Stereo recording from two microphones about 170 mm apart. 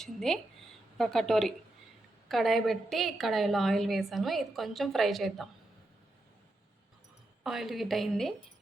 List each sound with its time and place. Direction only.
0.0 s a woman's voice: centre (ahead or behind)
7.4 s a woman's voice: centre (ahead or behind)